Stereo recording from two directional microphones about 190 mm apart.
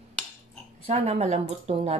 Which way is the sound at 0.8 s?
35° right (ahead or behind).